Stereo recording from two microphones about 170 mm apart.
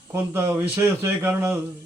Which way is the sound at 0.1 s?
15° right (ahead or behind).